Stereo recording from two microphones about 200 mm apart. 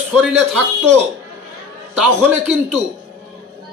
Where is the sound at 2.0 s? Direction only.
5° right (ahead or behind).